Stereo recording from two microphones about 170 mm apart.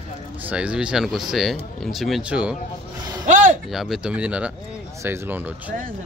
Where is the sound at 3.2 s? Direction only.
50° right (ahead or behind).